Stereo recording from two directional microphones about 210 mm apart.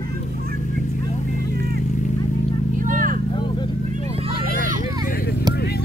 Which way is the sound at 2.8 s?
40° right (ahead or behind).